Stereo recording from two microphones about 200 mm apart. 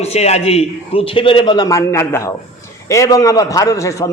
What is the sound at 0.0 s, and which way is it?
A man's voice, 30° left (ahead or behind).